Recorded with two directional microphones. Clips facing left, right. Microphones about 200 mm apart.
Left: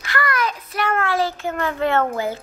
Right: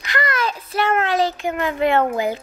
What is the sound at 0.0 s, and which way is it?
A child's voice, 20° right (ahead or behind).